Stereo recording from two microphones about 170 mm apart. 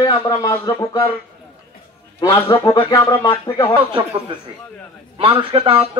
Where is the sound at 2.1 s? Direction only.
15° left (ahead or behind).